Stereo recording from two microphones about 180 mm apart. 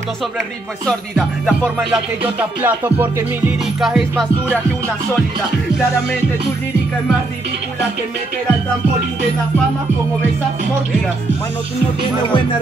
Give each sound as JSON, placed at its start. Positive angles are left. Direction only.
{"t": 0.8, "sound": "music", "side_deg": 0}
{"t": 3.8, "sound": "music", "side_deg": 0}